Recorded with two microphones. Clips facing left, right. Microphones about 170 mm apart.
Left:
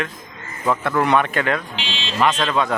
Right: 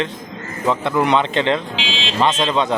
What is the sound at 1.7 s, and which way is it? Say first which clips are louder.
Vehicle: right 4 dB; 90° right.